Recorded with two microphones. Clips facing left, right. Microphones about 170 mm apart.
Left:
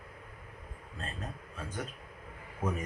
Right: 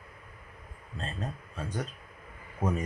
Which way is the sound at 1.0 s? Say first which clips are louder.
Right 4 dB; 30° right (ahead or behind).